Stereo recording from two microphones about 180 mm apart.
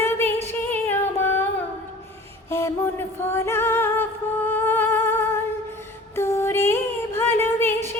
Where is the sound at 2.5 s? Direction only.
15° left (ahead or behind).